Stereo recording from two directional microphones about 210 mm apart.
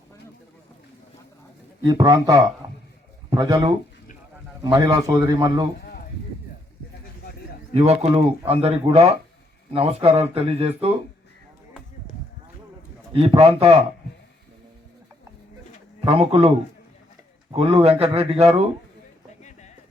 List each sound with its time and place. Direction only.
1.8 s a man's voice: 15° right (ahead or behind)
7.7 s speech: 30° right (ahead or behind)
13.1 s speech: 30° right (ahead or behind)
16.0 s speech: 25° right (ahead or behind)
17.5 s a man's voice: 25° right (ahead or behind)
19.4 s a sound: 35° left (ahead or behind)